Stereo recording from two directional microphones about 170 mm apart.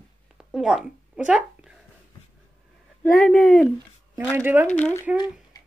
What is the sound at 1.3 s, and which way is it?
Speech, 5° right (ahead or behind).